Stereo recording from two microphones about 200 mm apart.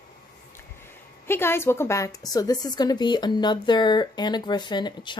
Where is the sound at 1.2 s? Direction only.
10° left (ahead or behind).